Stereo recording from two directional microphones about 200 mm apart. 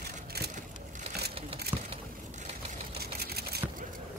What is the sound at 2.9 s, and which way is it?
Sewing machine, 50° right (ahead or behind).